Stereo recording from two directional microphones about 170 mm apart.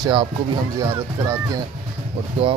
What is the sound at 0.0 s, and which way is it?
Speech, 30° right (ahead or behind).